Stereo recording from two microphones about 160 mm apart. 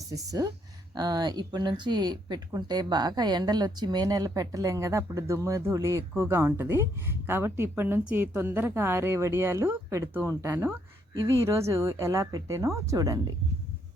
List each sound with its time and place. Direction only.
0.1 s a woman's voice: 20° right (ahead or behind)